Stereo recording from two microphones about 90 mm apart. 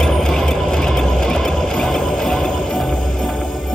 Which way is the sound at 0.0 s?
5° left (ahead or behind).